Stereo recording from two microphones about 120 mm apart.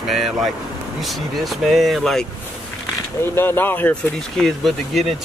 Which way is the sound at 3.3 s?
20° left (ahead or behind).